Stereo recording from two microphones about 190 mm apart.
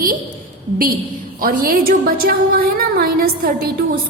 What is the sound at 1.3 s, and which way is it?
A woman's voice, 50° right (ahead or behind).